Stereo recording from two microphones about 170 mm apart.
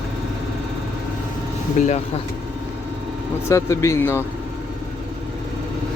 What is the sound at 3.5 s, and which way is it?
Speech, 15° left (ahead or behind).